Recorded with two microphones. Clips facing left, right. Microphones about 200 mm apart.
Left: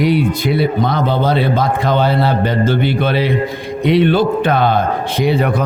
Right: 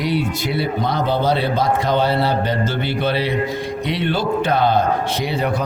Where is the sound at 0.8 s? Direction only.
50° left (ahead or behind).